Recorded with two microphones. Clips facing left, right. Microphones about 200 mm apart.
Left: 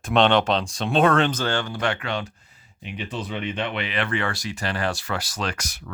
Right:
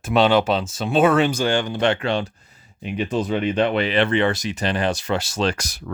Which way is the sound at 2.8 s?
45° right (ahead or behind).